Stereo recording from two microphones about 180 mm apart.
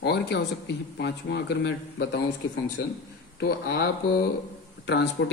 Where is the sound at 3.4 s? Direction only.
60° left (ahead or behind).